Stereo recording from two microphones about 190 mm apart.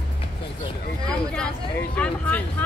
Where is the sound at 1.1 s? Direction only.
5° left (ahead or behind).